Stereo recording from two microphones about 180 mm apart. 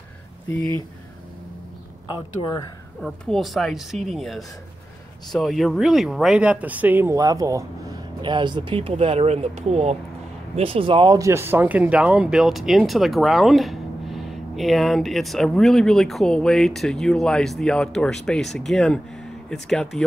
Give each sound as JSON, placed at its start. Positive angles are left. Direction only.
{"t": 3.0, "sound": "speech", "side_deg": 0}